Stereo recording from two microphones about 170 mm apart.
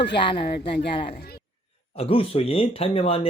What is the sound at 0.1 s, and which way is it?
Speech, 30° left (ahead or behind).